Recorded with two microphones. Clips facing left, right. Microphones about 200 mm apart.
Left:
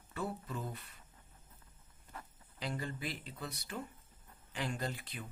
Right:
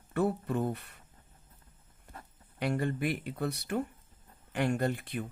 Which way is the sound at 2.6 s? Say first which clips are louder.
Right 10 dB; 60° right (ahead or behind).